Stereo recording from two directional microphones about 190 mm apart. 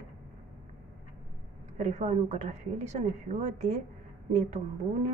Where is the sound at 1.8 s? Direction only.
40° right (ahead or behind).